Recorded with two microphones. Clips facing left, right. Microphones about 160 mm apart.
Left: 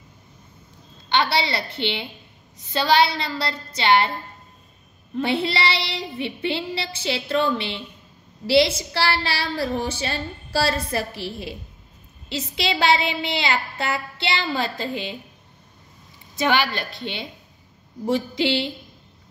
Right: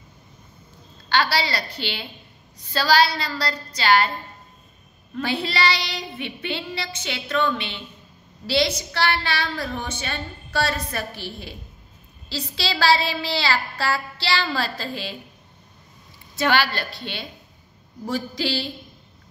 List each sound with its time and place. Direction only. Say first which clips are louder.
1.0 s a woman's voice: left 1 dB; 25° left (ahead or behind)
5.1 s a woman's voice: left 3 dB; 25° left (ahead or behind)
16.3 s a woman's voice: even; 15° left (ahead or behind)